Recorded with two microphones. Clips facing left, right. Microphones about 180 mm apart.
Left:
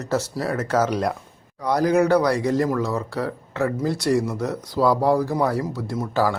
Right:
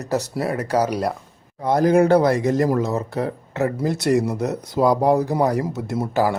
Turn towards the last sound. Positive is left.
turn(degrees=-20)  # may be behind; listen again after turning